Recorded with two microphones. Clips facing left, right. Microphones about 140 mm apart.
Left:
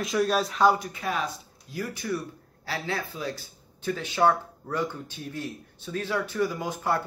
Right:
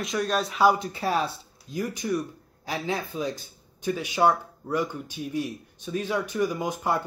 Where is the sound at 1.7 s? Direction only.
20° right (ahead or behind).